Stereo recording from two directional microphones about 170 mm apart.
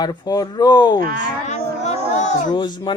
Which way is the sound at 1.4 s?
45° left (ahead or behind).